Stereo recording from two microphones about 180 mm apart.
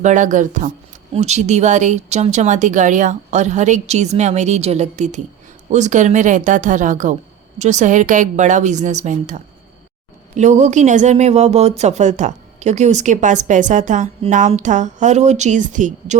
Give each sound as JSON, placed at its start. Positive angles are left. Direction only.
{"t": 0.0, "sound": "a woman's voice", "side_deg": -45}